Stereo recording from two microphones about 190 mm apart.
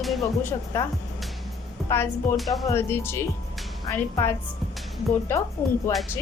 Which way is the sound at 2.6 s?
15° left (ahead or behind).